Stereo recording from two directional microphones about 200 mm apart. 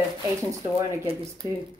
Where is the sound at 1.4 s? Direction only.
20° left (ahead or behind).